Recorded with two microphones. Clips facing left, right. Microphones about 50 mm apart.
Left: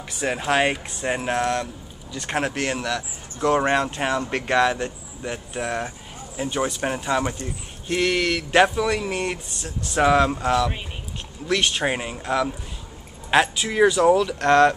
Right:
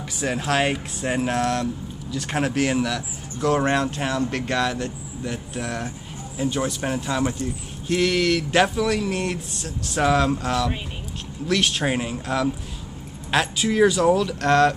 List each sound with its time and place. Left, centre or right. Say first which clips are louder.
0.4 s speech: left 1 dB; centre
3.3 s speech: left 1 dB; centre
10.0 s speech: left 2 dB; centre
13.6 s speech: even; centre